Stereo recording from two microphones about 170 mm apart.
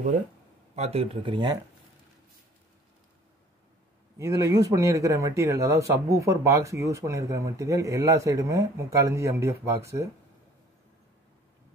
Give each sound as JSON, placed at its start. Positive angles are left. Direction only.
{"t": 0.7, "sound": "speech", "side_deg": -35}
{"t": 4.2, "sound": "speech", "side_deg": -20}